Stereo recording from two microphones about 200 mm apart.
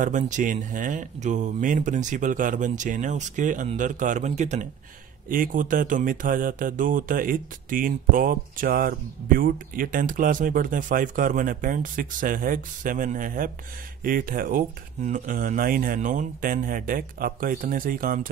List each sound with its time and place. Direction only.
0.0 s speech: 40° right (ahead or behind)